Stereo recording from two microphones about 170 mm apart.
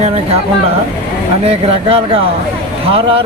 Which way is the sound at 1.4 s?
35° right (ahead or behind).